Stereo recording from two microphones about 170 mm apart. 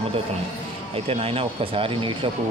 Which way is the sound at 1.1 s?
35° right (ahead or behind).